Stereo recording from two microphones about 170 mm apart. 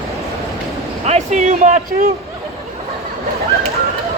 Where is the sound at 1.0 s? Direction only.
40° right (ahead or behind).